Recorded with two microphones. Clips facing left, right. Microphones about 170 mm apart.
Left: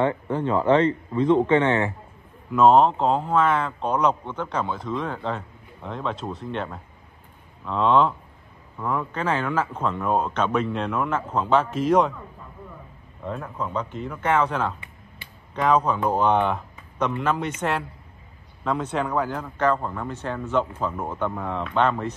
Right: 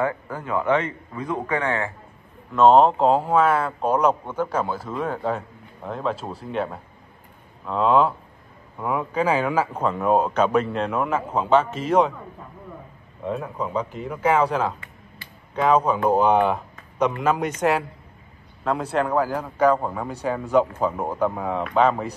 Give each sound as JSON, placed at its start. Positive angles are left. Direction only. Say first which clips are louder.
{"t": 0.0, "sound": "a man's voice", "louder": "left 3 dB", "side_deg": 25}
{"t": 2.5, "sound": "speech", "louder": "right 1 dB", "side_deg": 0}
{"t": 13.2, "sound": "speech", "louder": "right 3 dB", "side_deg": -10}
{"t": 15.5, "sound": "speech", "louder": "right 2 dB", "side_deg": -5}